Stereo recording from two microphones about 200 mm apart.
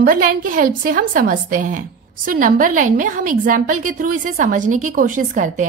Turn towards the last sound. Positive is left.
turn(degrees=-40)  # may be behind; listen again after turning